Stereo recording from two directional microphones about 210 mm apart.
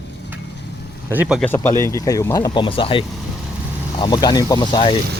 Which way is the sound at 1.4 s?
10° left (ahead or behind).